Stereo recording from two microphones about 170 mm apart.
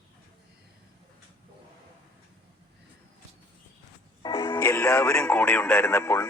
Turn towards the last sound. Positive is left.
turn(degrees=15)  # may be behind; listen again after turning